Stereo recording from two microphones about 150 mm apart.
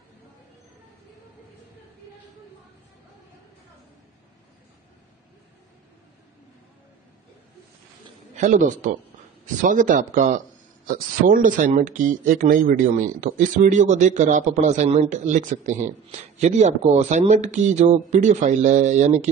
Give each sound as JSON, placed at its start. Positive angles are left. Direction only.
{"t": 8.4, "sound": "a man's voice", "side_deg": -55}
{"t": 10.9, "sound": "speech", "side_deg": -70}